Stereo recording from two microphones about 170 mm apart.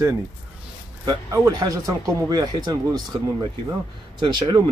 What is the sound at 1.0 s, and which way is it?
Speech, 20° right (ahead or behind).